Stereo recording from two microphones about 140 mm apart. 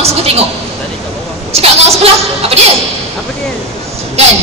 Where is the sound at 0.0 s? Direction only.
45° right (ahead or behind).